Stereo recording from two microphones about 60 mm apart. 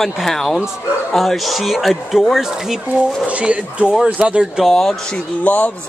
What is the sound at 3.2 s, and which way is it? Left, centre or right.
Speech, right.